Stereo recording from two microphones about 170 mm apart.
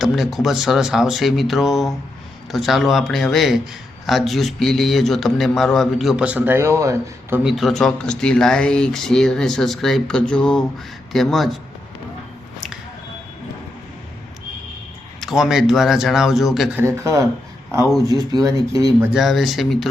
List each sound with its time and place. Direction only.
0.0 s speech: centre (ahead or behind); by 7.4 s 15° right (ahead or behind)
7.4 s speech: centre (ahead or behind)
15.2 s speech: centre (ahead or behind)
16.8 s speech: 20° right (ahead or behind)
19.1 s speech: centre (ahead or behind)